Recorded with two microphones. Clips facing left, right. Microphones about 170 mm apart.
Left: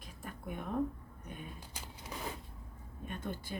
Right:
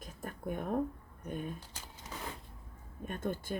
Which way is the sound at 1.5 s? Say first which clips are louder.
Left 1 dB; 10° left (ahead or behind).